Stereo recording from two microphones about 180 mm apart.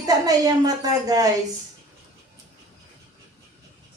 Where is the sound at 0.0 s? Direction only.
20° right (ahead or behind).